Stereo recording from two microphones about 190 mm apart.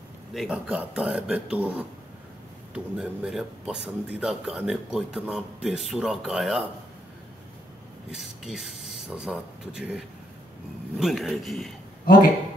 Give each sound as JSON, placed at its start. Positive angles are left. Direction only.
{"t": 0.3, "sound": "speech", "side_deg": 0}
{"t": 8.1, "sound": "speech", "side_deg": -5}